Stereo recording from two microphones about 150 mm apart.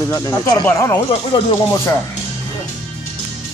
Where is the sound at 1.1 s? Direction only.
35° left (ahead or behind).